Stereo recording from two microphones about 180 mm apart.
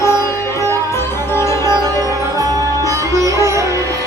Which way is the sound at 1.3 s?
15° left (ahead or behind).